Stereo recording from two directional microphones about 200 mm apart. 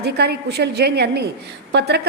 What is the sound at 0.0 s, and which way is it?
A woman's voice, 55° right (ahead or behind).